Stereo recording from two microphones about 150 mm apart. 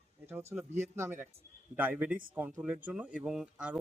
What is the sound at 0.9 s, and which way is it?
Speech, 15° right (ahead or behind).